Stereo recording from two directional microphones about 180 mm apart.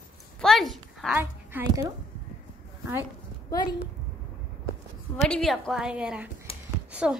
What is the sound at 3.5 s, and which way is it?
Speech, 20° left (ahead or behind).